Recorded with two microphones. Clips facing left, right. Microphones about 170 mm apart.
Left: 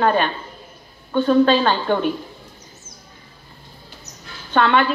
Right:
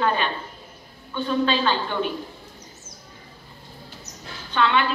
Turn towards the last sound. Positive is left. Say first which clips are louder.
# left 4 dB
turn(degrees=50)  # may be behind; listen again after turning